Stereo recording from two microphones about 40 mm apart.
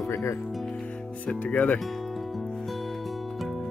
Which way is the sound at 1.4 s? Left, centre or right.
Left.